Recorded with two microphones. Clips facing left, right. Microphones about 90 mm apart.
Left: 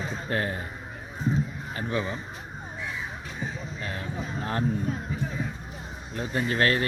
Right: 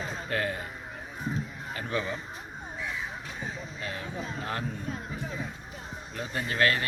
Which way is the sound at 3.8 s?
35° left (ahead or behind).